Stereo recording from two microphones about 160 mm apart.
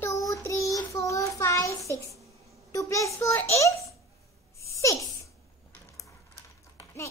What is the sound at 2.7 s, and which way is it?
A child's voice, 20° left (ahead or behind).